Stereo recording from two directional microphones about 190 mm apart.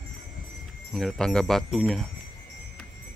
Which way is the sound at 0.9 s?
Centre (ahead or behind).